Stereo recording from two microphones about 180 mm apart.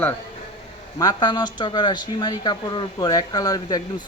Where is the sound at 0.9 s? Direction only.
25° left (ahead or behind).